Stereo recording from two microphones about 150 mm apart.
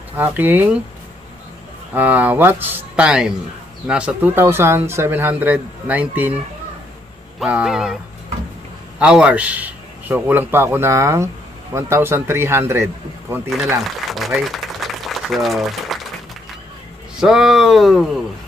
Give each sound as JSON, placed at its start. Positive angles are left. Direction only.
{"t": 0.1, "sound": "speech", "side_deg": -15}
{"t": 2.0, "sound": "speech", "side_deg": -10}
{"t": 9.0, "sound": "speech", "side_deg": -5}
{"t": 13.8, "sound": "a sound", "side_deg": 0}
{"t": 17.2, "sound": "speech", "side_deg": -5}